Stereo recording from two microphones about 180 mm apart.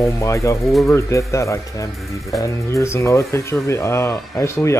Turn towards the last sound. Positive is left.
turn(degrees=15)  # may be behind; listen again after turning